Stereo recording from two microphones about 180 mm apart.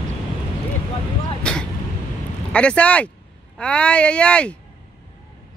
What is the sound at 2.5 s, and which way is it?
Speech, 5° left (ahead or behind).